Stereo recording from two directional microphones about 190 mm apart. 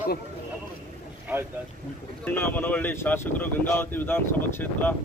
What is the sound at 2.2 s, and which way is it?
Speech, 10° left (ahead or behind).